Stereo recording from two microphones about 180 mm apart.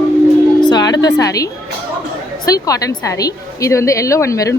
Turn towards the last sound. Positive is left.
turn(degrees=15)  # may be behind; listen again after turning